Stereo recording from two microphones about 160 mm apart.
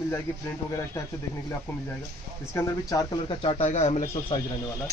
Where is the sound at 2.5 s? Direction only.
20° left (ahead or behind).